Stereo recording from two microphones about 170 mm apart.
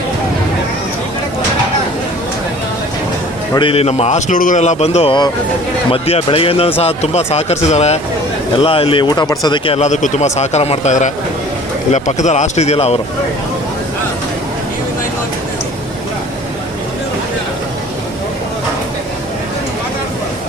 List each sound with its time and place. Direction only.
3.5 s speech: 30° left (ahead or behind)